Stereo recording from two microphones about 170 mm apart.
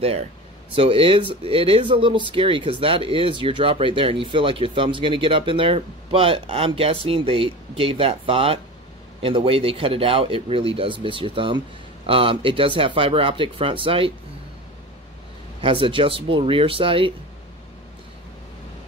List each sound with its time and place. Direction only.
0.7 s speech: 35° right (ahead or behind)
15.6 s speech: 30° right (ahead or behind)